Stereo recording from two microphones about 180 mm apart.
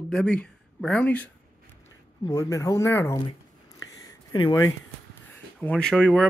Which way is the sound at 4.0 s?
25° left (ahead or behind).